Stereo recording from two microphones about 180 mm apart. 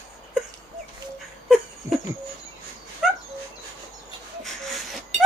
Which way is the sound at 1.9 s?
15° right (ahead or behind).